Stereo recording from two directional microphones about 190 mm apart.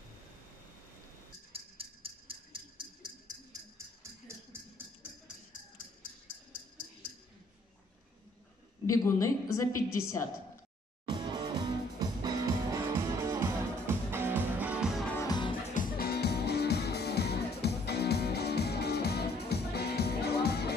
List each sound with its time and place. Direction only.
1.5 s a sound: 30° right (ahead or behind); by 4.8 s 15° right (ahead or behind)
8.8 s a woman's voice: 15° left (ahead or behind)
11.1 s music: 20° right (ahead or behind); by 15.0 s 5° right (ahead or behind)
15.1 s music: 20° left (ahead or behind)
15.7 s music: 50° left (ahead or behind)